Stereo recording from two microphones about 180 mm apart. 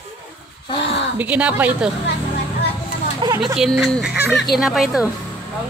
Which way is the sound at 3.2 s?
25° right (ahead or behind).